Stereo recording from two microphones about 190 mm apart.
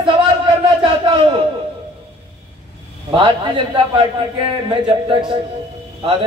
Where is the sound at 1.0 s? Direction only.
25° right (ahead or behind).